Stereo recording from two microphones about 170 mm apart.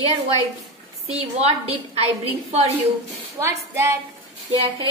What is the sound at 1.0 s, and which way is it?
A woman's voice, 40° right (ahead or behind).